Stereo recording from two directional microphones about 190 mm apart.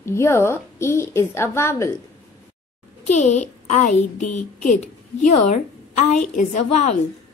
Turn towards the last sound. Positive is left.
turn(degrees=40)  # may be behind; listen again after turning